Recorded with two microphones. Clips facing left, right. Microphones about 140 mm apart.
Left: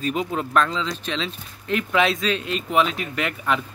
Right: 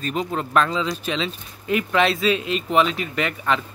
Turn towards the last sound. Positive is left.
turn(degrees=0)  # may be behind; listen again after turning